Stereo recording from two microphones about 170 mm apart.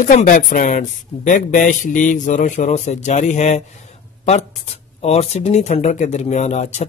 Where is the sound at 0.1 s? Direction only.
50° left (ahead or behind).